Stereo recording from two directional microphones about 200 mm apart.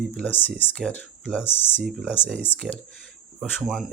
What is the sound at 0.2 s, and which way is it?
Speech, 10° left (ahead or behind).